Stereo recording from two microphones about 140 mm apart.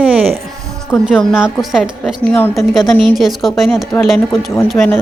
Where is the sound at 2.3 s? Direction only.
15° left (ahead or behind).